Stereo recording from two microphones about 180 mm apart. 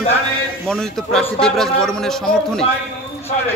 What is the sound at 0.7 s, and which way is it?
A man's voice, 5° left (ahead or behind).